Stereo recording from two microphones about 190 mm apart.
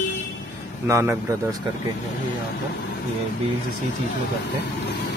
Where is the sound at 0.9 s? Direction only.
15° right (ahead or behind).